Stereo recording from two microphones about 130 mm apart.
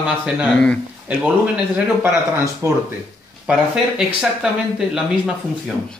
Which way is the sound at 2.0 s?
20° right (ahead or behind).